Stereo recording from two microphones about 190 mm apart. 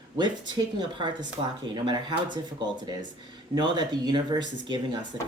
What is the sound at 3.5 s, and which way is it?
Speech, 20° right (ahead or behind).